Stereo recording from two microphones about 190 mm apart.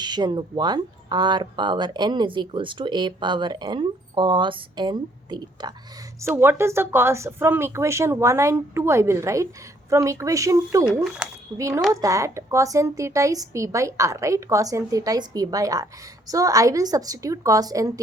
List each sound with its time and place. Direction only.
0.0 s speech: 20° right (ahead or behind)
6.2 s a woman's voice: 10° right (ahead or behind)
11.2 s a sound: 5° right (ahead or behind)
11.5 s a woman's voice: 15° right (ahead or behind)